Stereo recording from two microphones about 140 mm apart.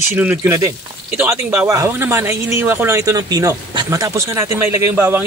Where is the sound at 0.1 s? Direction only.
15° right (ahead or behind).